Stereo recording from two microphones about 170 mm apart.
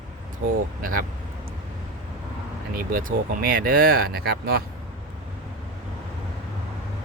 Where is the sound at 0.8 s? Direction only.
55° right (ahead or behind).